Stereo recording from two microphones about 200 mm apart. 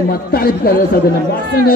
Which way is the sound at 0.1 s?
50° left (ahead or behind).